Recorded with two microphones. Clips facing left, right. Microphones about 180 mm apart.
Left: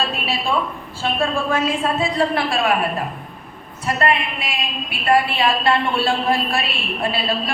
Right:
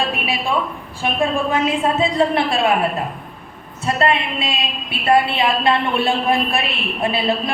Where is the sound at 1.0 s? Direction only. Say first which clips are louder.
Right 2 dB; 20° right (ahead or behind).